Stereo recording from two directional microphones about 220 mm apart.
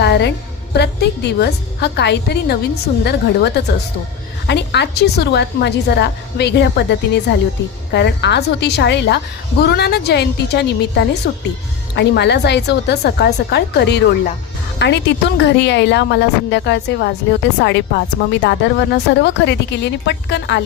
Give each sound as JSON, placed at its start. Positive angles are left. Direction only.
{"t": 0.0, "sound": "a woman's voice", "side_deg": 50}